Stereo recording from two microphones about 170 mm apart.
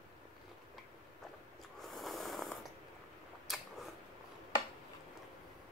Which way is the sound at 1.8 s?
Centre (ahead or behind).